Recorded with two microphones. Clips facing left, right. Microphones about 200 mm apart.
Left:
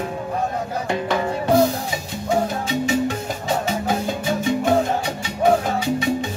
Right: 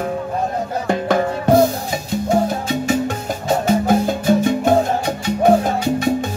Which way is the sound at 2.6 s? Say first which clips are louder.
Right 2 dB; 50° right (ahead or behind).